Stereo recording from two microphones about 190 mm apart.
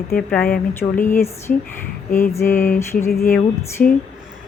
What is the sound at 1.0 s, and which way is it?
A woman's voice, 15° left (ahead or behind).